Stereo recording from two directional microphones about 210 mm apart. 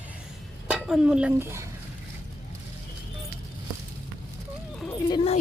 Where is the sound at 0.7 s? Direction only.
5° right (ahead or behind).